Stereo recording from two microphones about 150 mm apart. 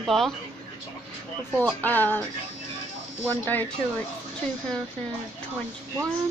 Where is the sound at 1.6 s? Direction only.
10° left (ahead or behind).